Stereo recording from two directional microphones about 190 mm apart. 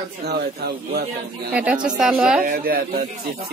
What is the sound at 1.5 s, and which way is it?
Speech, 5° right (ahead or behind).